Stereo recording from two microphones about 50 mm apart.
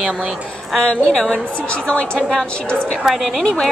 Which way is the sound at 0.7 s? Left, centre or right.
Centre.